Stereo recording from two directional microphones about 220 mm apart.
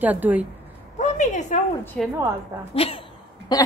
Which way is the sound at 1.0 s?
35° left (ahead or behind).